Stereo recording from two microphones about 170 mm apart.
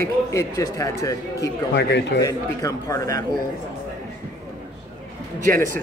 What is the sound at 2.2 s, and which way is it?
A man's voice, 20° left (ahead or behind).